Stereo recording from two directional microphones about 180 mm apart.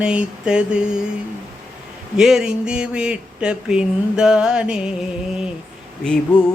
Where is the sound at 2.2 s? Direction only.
5° right (ahead or behind).